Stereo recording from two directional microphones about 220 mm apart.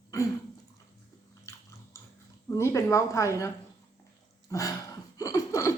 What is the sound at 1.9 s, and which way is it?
Dog, 10° left (ahead or behind).